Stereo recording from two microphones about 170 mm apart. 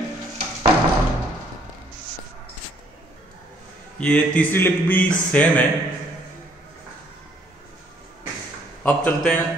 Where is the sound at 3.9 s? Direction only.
5° left (ahead or behind).